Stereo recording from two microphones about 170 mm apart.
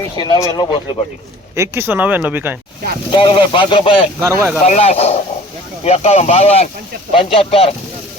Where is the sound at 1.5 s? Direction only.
15° right (ahead or behind).